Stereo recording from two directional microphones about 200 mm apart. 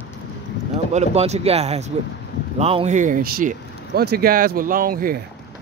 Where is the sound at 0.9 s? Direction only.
35° right (ahead or behind).